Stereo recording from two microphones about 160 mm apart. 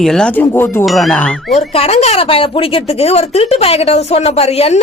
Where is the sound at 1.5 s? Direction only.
40° left (ahead or behind).